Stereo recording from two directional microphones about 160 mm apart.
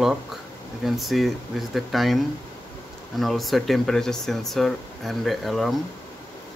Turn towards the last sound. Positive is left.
turn(degrees=0)  # may be behind; listen again after turning